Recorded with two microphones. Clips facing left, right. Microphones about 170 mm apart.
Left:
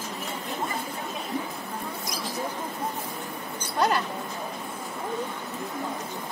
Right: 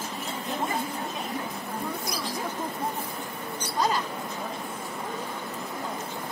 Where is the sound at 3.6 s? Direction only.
60° left (ahead or behind).